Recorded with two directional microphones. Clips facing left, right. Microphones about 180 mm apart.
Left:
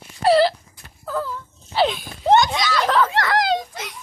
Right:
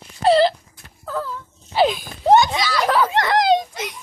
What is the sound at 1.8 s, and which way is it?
Speech, 5° right (ahead or behind).